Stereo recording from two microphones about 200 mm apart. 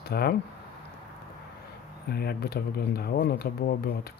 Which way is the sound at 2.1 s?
50° left (ahead or behind).